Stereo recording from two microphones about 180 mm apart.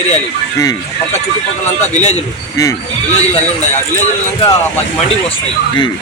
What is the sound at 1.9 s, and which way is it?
Speech, 40° left (ahead or behind).